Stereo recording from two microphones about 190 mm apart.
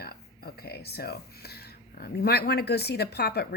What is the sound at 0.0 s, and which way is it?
Speech, 55° left (ahead or behind).